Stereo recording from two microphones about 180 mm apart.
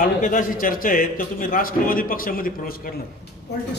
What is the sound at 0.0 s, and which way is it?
A man's voice, 50° left (ahead or behind).